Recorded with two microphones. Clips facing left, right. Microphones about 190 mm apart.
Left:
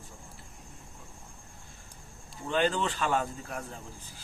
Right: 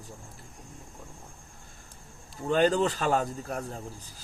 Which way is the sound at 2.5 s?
40° right (ahead or behind).